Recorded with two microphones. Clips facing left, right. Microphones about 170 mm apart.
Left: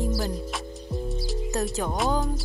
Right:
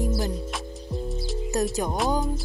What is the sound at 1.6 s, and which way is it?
Speech, 15° right (ahead or behind).